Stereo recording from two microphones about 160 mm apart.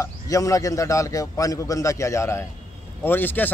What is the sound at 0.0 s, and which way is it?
A man's voice, 20° left (ahead or behind).